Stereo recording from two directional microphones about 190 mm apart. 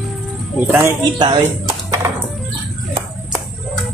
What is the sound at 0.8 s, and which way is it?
Speech, 20° right (ahead or behind).